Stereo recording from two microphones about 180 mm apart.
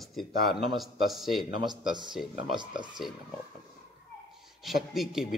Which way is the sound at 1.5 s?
25° right (ahead or behind).